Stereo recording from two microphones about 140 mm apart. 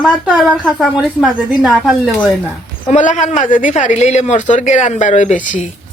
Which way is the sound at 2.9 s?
60° left (ahead or behind).